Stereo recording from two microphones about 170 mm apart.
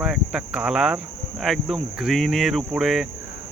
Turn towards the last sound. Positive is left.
turn(degrees=0)  # may be behind; listen again after turning